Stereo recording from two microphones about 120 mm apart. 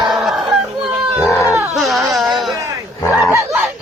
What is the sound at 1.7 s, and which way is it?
Baby cry, centre (ahead or behind).